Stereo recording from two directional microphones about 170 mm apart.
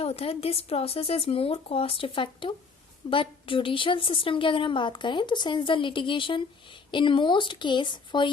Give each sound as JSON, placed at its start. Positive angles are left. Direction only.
{"t": 0.0, "sound": "a woman's voice", "side_deg": 35}